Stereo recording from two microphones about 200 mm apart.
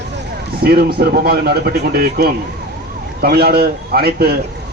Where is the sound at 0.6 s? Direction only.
50° right (ahead or behind).